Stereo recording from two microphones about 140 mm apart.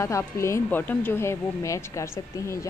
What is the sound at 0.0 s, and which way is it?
A woman's voice, 20° left (ahead or behind).